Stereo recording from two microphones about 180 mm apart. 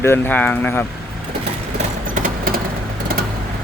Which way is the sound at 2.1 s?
50° right (ahead or behind).